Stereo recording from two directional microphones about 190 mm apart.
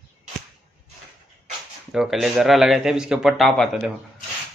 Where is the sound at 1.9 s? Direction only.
5° right (ahead or behind).